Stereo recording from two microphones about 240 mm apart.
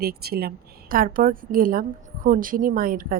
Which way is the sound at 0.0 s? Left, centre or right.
Right.